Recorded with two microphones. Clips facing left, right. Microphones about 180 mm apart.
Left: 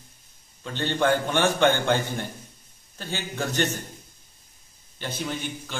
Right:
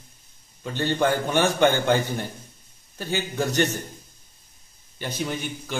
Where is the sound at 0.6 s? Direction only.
10° right (ahead or behind).